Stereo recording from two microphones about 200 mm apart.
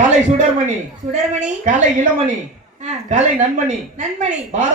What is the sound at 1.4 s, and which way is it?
A woman's voice, 40° right (ahead or behind).